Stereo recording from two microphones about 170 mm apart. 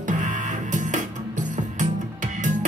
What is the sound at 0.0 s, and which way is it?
Music, 50° right (ahead or behind).